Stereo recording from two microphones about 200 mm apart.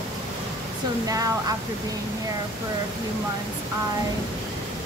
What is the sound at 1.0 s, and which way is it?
Speech, 15° right (ahead or behind).